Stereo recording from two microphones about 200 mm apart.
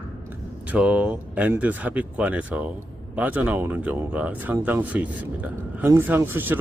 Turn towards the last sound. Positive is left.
turn(degrees=-10)  # may be behind; listen again after turning